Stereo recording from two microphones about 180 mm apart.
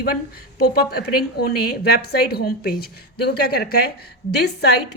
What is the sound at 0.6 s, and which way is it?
A woman's voice, 60° left (ahead or behind).